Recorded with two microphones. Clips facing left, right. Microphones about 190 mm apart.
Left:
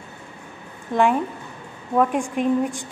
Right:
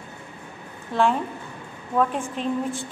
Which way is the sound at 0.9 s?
15° left (ahead or behind).